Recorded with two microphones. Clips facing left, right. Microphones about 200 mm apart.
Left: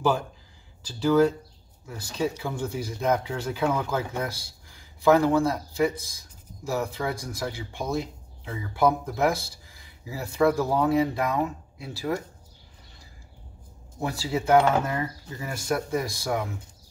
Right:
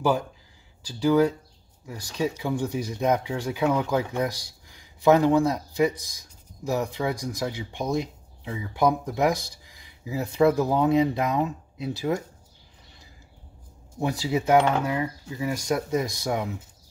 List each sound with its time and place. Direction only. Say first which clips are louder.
0.8 s speech: even; 10° right (ahead or behind)
13.9 s speech: right 3 dB; 15° right (ahead or behind)